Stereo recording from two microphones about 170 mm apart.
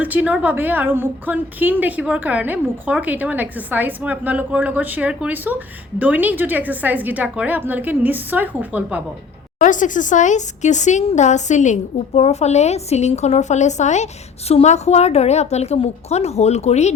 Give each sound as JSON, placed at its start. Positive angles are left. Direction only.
{"t": 0.0, "sound": "a woman's voice", "side_deg": -10}
{"t": 9.6, "sound": "speech", "side_deg": 50}